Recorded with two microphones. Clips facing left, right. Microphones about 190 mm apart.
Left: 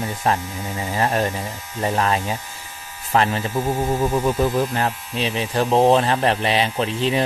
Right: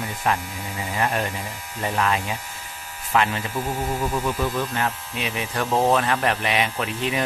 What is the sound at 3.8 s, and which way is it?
Speech, 20° left (ahead or behind).